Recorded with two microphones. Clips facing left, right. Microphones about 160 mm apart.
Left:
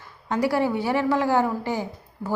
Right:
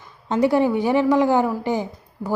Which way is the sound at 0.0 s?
20° right (ahead or behind).